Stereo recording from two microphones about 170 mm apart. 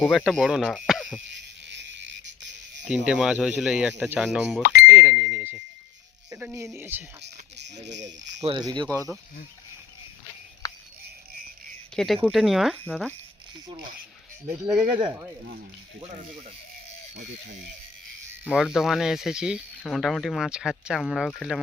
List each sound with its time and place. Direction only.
0.0 s speech: centre (ahead or behind)
1.3 s insect: 90° right
2.8 s speech: 5° right (ahead or behind)
4.6 s a sound: 60° left (ahead or behind)
4.9 s speech: 10° right (ahead or behind)
7.5 s speech: 90° right
8.4 s speech: 25° right (ahead or behind)
10.6 s a sound: 25° left (ahead or behind)
11.9 s speech: centre (ahead or behind)
14.5 s speech: 5° right (ahead or behind)
14.9 s speech: 20° right (ahead or behind)
18.4 s speech: 5° right (ahead or behind)